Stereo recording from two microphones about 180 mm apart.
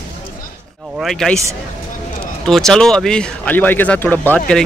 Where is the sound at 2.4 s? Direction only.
5° left (ahead or behind).